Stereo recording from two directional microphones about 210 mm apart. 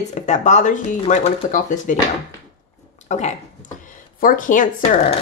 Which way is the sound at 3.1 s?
35° left (ahead or behind).